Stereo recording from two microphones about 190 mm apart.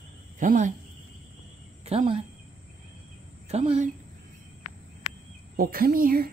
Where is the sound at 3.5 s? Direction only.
35° right (ahead or behind).